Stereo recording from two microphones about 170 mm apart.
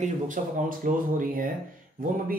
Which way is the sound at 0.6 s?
55° right (ahead or behind).